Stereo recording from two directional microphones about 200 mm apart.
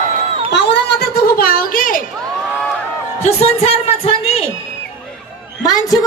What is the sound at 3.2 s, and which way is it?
A woman's voice, 30° left (ahead or behind).